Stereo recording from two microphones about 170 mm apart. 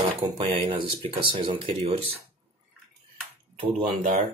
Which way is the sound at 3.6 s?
45° right (ahead or behind).